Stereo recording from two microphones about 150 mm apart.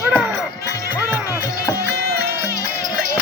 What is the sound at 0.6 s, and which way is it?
Music, 20° left (ahead or behind).